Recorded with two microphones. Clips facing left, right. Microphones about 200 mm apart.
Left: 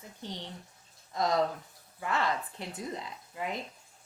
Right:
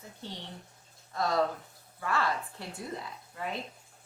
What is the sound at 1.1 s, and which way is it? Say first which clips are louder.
A woman's voice: left 1 dB; 20° left (ahead or behind).